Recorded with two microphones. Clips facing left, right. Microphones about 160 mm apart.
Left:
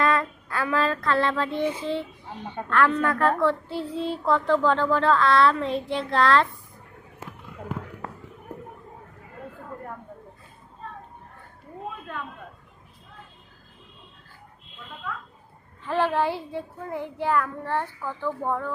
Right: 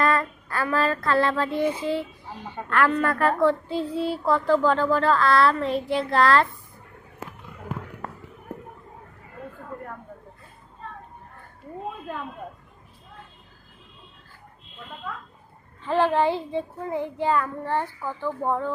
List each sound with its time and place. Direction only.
0.0 s female singing: centre (ahead or behind)
15.9 s a child's voice: 15° right (ahead or behind)